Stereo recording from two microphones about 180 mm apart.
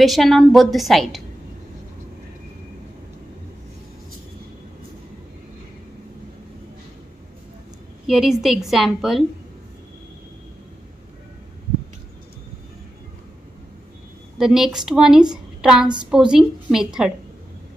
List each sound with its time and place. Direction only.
0.0 s a woman's voice: centre (ahead or behind)
8.1 s a woman's voice: centre (ahead or behind)
14.4 s a woman's voice: centre (ahead or behind)